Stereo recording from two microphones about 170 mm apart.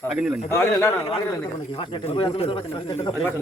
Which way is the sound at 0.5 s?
15° left (ahead or behind).